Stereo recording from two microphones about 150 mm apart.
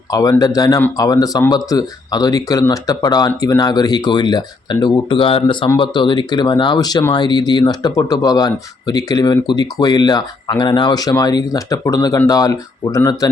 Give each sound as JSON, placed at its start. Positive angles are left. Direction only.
{"t": 0.1, "sound": "speech", "side_deg": 25}